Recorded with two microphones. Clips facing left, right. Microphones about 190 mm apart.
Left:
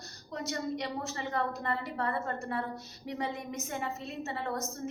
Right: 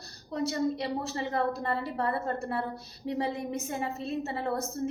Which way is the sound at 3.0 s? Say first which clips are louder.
Right 5 dB; 30° right (ahead or behind).